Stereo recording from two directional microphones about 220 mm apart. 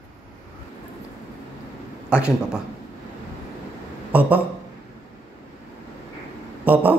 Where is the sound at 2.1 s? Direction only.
5° right (ahead or behind).